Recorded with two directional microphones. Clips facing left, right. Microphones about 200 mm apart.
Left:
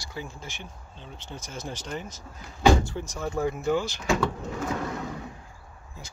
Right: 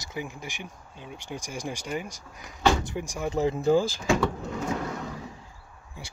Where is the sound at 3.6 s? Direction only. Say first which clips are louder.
Right 6 dB; 35° right (ahead or behind).